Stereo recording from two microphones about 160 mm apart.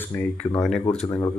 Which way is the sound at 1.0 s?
25° left (ahead or behind).